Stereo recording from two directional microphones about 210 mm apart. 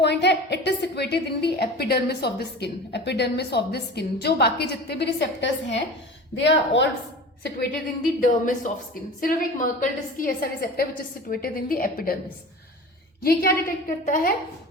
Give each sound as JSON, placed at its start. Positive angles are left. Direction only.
{"t": 0.0, "sound": "a woman's voice", "side_deg": 55}
{"t": 8.2, "sound": "a woman's voice", "side_deg": 35}
{"t": 13.2, "sound": "a woman's voice", "side_deg": 45}